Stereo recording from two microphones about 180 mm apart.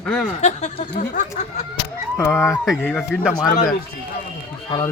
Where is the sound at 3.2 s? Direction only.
5° right (ahead or behind).